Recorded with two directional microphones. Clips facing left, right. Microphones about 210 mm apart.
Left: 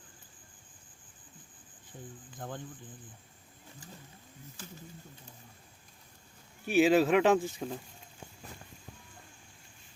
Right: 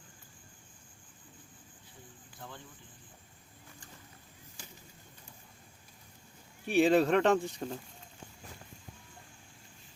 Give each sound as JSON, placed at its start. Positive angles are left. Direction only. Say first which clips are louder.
{"t": 2.4, "sound": "speech", "louder": "left 7 dB", "side_deg": 50}
{"t": 6.7, "sound": "speech", "louder": "left 1 dB", "side_deg": 0}